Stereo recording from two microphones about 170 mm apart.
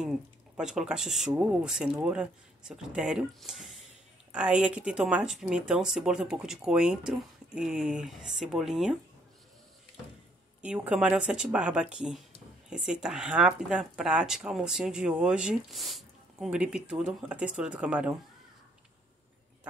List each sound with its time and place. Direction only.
0.6 s speech: 5° right (ahead or behind)
10.6 s speech: 5° right (ahead or behind)